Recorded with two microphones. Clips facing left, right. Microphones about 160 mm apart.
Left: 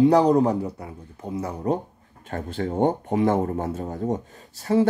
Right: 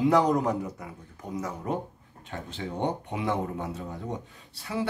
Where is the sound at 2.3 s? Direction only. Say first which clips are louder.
Left 8 dB; 50° left (ahead or behind).